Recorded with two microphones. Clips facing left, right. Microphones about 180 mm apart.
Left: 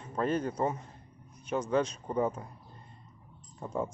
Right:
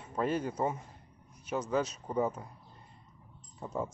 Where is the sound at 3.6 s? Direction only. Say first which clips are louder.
Left 2 dB; 5° right (ahead or behind).